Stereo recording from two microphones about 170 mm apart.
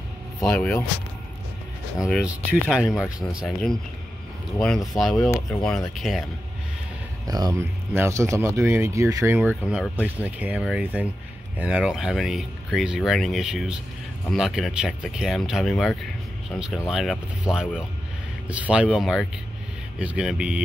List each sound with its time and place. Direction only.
0.4 s speech: 5° left (ahead or behind)
2.0 s speech: 5° right (ahead or behind)
7.2 s speech: 20° right (ahead or behind); by 20.6 s 5° right (ahead or behind)